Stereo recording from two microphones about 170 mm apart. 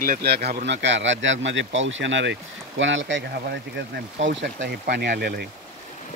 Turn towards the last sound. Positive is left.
turn(degrees=-70)  # may be behind; listen again after turning